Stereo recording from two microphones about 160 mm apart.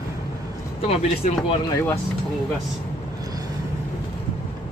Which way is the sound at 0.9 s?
35° left (ahead or behind).